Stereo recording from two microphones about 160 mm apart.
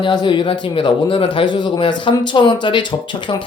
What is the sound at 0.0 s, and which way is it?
Speech, 30° left (ahead or behind).